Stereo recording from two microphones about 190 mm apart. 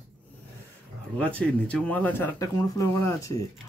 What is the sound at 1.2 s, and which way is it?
Speech, 5° left (ahead or behind).